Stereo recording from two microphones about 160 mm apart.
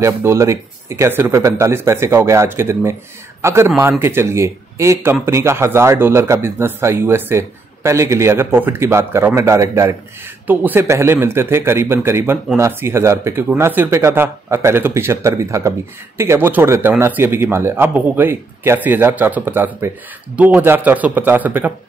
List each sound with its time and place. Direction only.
0.0 s a man's voice: 15° right (ahead or behind)